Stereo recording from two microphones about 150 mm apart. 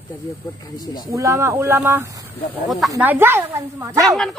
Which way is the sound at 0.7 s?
25° left (ahead or behind).